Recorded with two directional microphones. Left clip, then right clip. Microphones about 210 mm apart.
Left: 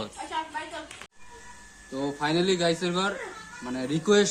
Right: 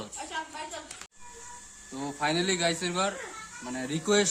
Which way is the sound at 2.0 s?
15° right (ahead or behind).